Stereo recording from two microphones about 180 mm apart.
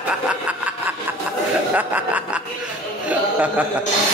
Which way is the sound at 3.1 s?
10° right (ahead or behind).